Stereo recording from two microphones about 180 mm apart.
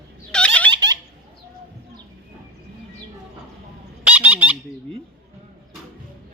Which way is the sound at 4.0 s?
10° right (ahead or behind).